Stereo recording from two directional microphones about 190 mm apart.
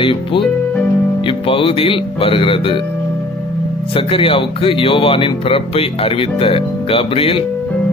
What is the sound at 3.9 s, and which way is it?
Speech, 30° left (ahead or behind).